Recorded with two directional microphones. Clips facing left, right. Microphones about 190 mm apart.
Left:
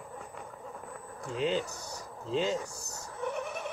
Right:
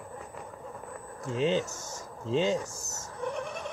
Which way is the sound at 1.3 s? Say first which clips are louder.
Right 3 dB; 20° right (ahead or behind).